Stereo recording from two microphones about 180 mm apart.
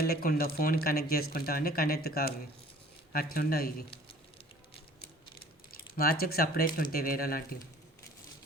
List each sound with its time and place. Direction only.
0.0 s speech: 55° left (ahead or behind)
5.9 s speech: 55° left (ahead or behind)